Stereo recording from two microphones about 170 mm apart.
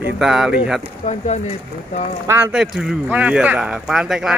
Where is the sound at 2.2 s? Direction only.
15° right (ahead or behind).